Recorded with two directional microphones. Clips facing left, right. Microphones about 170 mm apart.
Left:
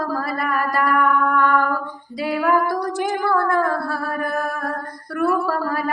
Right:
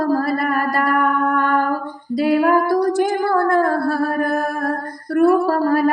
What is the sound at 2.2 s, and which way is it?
Music, 45° right (ahead or behind).